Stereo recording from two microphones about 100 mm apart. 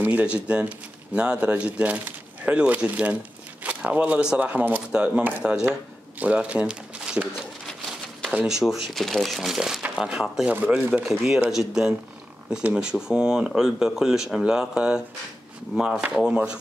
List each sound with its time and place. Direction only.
0.0 s speech: 15° right (ahead or behind)
8.3 s speech: 5° right (ahead or behind)
11.1 s speech: 5° right (ahead or behind)